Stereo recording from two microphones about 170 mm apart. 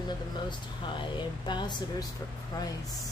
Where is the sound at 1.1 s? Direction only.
25° left (ahead or behind).